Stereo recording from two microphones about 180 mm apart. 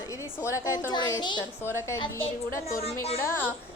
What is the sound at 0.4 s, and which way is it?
A woman's voice, 15° left (ahead or behind).